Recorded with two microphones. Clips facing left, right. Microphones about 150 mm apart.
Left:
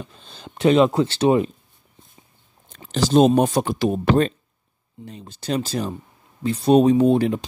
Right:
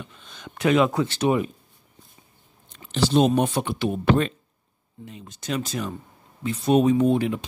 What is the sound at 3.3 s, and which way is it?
Speech, 40° left (ahead or behind).